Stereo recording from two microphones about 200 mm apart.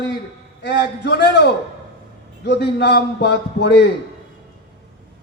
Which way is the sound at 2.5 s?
55° left (ahead or behind).